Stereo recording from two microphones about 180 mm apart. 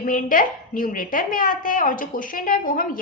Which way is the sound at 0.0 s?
50° left (ahead or behind).